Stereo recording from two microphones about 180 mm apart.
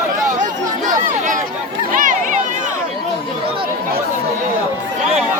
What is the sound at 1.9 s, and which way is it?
Chatter, 45° right (ahead or behind).